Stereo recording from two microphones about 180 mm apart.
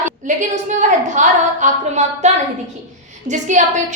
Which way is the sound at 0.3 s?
45° right (ahead or behind).